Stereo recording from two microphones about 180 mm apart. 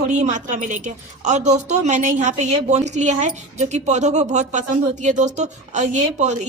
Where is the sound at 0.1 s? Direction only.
40° right (ahead or behind).